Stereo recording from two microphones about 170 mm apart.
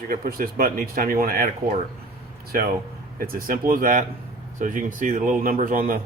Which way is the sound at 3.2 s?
55° right (ahead or behind).